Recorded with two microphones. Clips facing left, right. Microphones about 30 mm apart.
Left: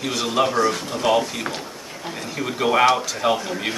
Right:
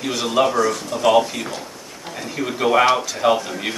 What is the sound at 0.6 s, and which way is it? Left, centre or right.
Speech, left.